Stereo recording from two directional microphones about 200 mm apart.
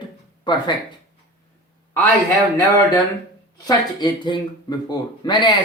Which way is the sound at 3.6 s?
20° left (ahead or behind).